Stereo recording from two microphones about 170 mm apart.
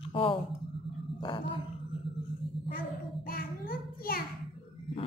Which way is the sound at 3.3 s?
60° left (ahead or behind).